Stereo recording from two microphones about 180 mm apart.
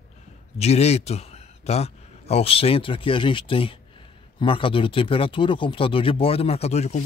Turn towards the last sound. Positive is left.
turn(degrees=35)  # may be behind; listen again after turning